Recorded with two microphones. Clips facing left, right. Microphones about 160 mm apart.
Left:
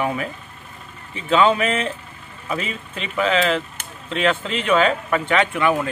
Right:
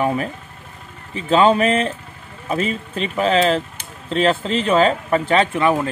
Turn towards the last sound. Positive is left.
turn(degrees=-30)  # may be behind; listen again after turning